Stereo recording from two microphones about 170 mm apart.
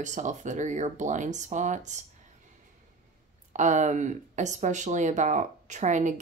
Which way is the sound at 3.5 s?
45° right (ahead or behind).